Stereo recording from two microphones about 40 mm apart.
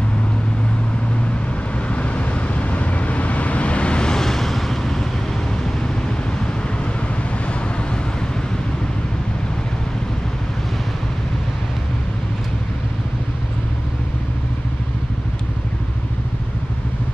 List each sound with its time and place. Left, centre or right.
1.9 s vehicle: left; by 5.0 s centre